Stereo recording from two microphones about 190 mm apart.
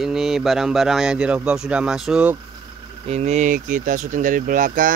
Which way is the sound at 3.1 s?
35° right (ahead or behind).